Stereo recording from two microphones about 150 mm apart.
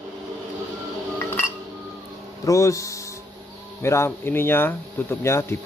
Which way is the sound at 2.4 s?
20° left (ahead or behind).